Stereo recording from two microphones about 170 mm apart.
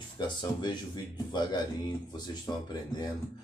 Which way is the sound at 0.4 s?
25° left (ahead or behind).